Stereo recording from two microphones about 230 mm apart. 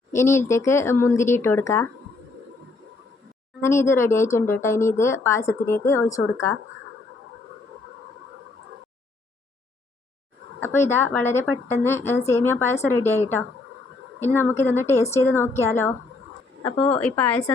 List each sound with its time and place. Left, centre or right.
0.1 s speech: centre
3.6 s speech: centre
10.6 s speech: centre
16.7 s a woman's voice: left
17.0 s speech: centre